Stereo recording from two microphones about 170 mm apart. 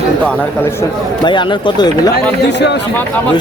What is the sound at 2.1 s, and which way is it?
Speech, 90° left.